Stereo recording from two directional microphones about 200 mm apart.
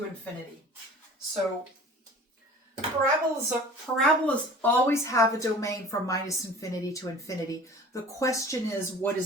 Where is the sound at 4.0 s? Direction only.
10° left (ahead or behind).